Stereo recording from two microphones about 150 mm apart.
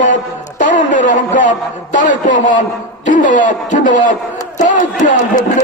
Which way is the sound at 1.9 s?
60° left (ahead or behind).